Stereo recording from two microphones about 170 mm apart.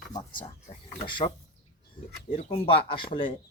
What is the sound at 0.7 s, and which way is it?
Speech, 40° left (ahead or behind).